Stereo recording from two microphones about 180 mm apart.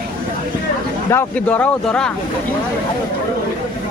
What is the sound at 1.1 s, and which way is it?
Speech, 5° left (ahead or behind).